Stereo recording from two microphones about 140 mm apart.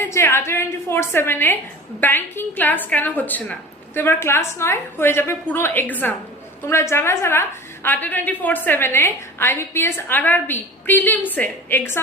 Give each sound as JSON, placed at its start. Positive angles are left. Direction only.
{"t": 0.0, "sound": "a woman's voice", "side_deg": 20}